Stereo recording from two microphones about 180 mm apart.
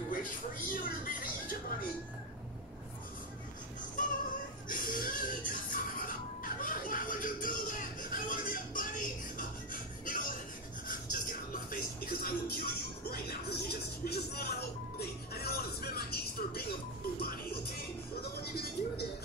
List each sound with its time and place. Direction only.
0.1 s music: 50° left (ahead or behind)
4.6 s a sound: 50° left (ahead or behind)
10.9 s music: 50° left (ahead or behind)